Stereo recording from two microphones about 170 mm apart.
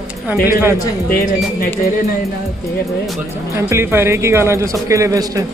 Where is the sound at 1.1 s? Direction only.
60° left (ahead or behind).